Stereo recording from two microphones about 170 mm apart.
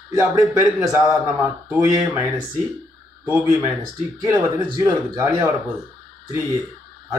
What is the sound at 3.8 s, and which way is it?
Speech, 20° right (ahead or behind).